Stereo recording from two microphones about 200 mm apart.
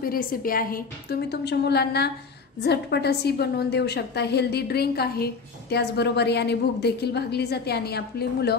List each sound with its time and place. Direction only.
0.0 s a woman's voice: 45° left (ahead or behind)